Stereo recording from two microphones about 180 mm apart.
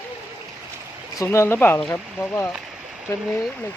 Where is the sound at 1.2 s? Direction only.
15° left (ahead or behind).